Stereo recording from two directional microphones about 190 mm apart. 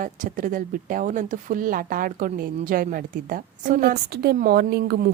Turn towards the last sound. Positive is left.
turn(degrees=-55)  # may be behind; listen again after turning